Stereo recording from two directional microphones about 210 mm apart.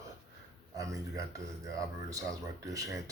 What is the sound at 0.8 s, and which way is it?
Speech, 15° right (ahead or behind).